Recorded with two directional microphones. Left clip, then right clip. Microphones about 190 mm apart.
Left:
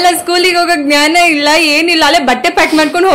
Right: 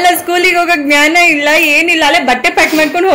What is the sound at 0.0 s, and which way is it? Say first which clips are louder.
Speech: even; 10° left (ahead or behind).